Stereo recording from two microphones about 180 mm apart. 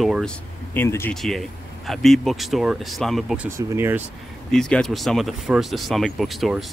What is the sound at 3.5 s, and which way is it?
Speech, 15° right (ahead or behind).